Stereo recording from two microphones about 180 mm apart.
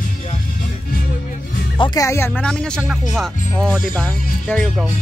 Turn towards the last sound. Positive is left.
turn(degrees=5)  # may be behind; listen again after turning